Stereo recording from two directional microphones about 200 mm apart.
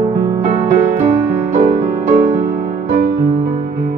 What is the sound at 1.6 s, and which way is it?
Music, 40° right (ahead or behind).